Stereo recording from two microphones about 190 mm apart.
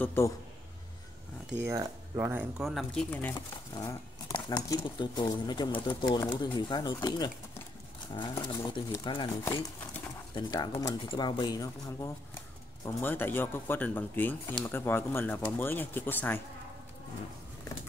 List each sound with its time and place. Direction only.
0.0 s speech: 10° left (ahead or behind)
1.7 s speech: 15° right (ahead or behind)
2.6 s speech: centre (ahead or behind)
3.3 s speech: 25° left (ahead or behind)